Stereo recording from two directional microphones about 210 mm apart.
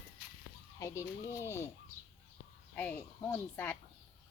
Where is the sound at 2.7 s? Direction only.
10° left (ahead or behind).